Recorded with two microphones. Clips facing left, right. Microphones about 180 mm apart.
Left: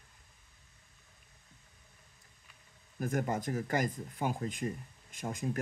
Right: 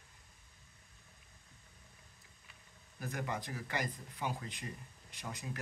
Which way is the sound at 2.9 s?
45° left (ahead or behind).